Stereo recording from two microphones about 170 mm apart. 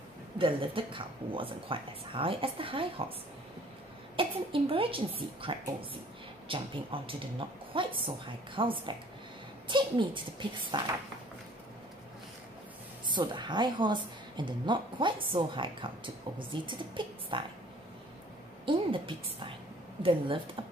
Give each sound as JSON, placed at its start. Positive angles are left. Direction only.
{"t": 0.4, "sound": "speech", "side_deg": -30}
{"t": 4.2, "sound": "a woman's voice", "side_deg": -30}
{"t": 13.1, "sound": "a woman's voice", "side_deg": -25}
{"t": 18.7, "sound": "speech", "side_deg": -30}